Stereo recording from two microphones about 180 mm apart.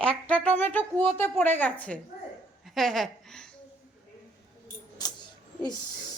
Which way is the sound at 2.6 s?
Centre (ahead or behind).